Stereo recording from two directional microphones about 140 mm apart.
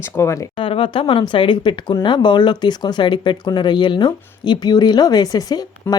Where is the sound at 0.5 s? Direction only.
40° left (ahead or behind).